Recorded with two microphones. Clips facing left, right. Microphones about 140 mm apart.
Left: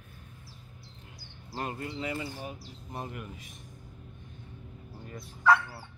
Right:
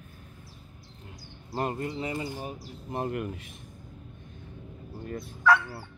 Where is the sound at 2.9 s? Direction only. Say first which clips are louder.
Right 9 dB; 65° right (ahead or behind).